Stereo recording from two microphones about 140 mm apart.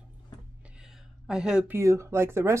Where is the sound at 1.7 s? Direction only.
20° right (ahead or behind).